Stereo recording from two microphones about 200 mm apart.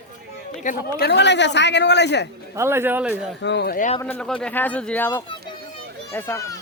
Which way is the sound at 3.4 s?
60° left (ahead or behind).